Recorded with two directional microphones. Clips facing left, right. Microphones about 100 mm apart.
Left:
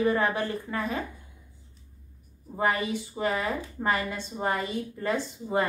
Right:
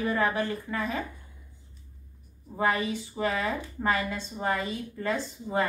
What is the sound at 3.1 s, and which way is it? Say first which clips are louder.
A woman's voice: even; 20° left (ahead or behind).